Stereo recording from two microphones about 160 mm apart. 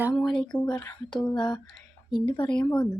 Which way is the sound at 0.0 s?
Centre (ahead or behind).